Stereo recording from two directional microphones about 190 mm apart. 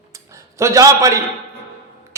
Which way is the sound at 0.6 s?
15° right (ahead or behind).